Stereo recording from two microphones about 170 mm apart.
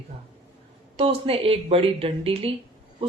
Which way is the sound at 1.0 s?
35° right (ahead or behind).